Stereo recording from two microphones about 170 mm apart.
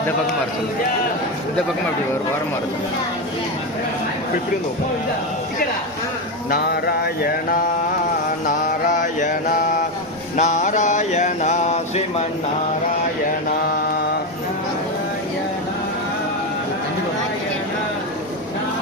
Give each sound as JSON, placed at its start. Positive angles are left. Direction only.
{"t": 6.5, "sound": "mantra", "side_deg": 70}
{"t": 8.4, "sound": "mantra", "side_deg": 50}
{"t": 10.3, "sound": "a sound", "side_deg": 45}